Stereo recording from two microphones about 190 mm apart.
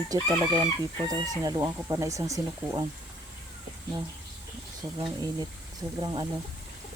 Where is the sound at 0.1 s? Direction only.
20° right (ahead or behind).